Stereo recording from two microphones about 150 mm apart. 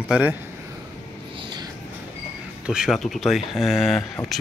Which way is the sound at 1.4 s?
30° right (ahead or behind).